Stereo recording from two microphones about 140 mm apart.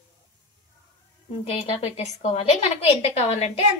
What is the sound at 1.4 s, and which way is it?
A woman's voice, 45° left (ahead or behind).